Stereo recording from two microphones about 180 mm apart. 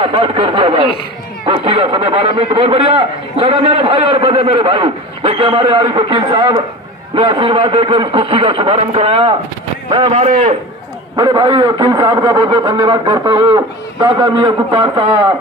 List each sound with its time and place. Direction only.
0.0 s a man's voice: 30° right (ahead or behind)
10.1 s a man's voice: 40° right (ahead or behind)
11.1 s a man's voice: 25° right (ahead or behind)